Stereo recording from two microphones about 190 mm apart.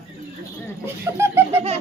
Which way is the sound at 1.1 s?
15° right (ahead or behind).